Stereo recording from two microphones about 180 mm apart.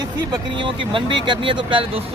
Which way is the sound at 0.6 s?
25° right (ahead or behind).